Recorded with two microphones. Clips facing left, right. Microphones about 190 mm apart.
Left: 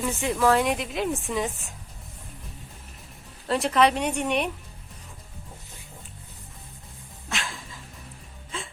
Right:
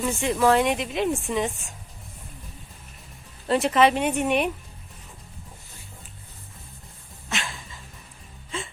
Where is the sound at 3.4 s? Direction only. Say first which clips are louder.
Right 2 dB; centre (ahead or behind).